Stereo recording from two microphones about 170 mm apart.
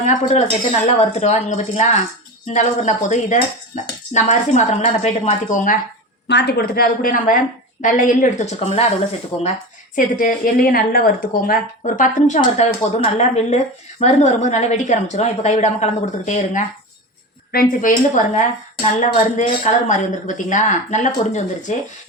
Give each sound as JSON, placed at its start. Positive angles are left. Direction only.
{"t": 0.0, "sound": "a woman's voice", "side_deg": 45}
{"t": 6.2, "sound": "a woman's voice", "side_deg": 85}
{"t": 9.9, "sound": "a woman's voice", "side_deg": 50}